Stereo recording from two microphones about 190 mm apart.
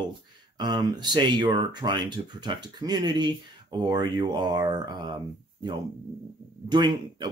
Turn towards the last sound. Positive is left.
turn(degrees=-25)  # may be behind; listen again after turning